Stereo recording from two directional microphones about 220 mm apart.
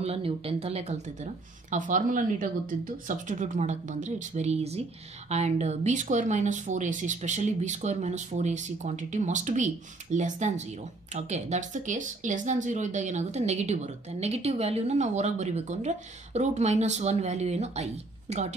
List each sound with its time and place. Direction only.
0.0 s a woman's voice: 25° right (ahead or behind)